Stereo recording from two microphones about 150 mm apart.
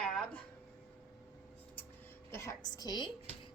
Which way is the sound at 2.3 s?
20° left (ahead or behind).